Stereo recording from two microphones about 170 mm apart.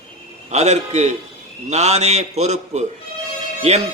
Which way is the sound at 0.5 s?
40° right (ahead or behind).